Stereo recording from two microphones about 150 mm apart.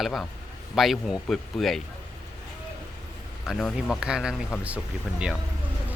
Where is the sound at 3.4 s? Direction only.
Centre (ahead or behind).